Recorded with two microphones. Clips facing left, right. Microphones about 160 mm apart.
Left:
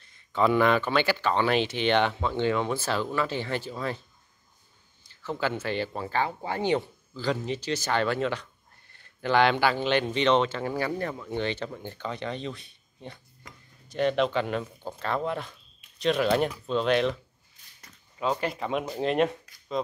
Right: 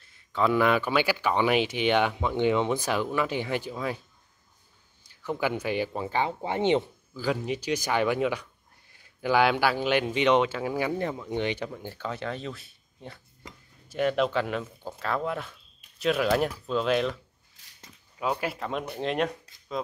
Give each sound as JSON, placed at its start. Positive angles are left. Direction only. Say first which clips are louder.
{"t": 0.0, "sound": "speech", "louder": "left 1 dB", "side_deg": -5}
{"t": 5.0, "sound": "speech", "louder": "right 1 dB", "side_deg": -15}
{"t": 7.2, "sound": "speech", "louder": "even", "side_deg": -10}